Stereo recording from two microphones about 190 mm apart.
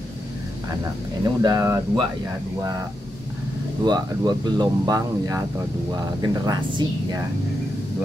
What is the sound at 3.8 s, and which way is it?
Speech, 20° right (ahead or behind).